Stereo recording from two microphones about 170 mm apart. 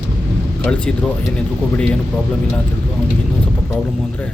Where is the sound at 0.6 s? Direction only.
5° left (ahead or behind).